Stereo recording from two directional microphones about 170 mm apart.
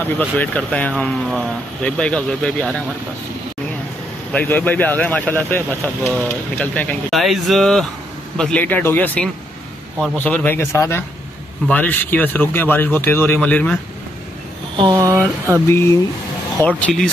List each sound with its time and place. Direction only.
0.0 s speech: 10° left (ahead or behind)
4.3 s speech: 10° left (ahead or behind)
14.8 s speech: 25° right (ahead or behind)
16.6 s speech: 5° left (ahead or behind)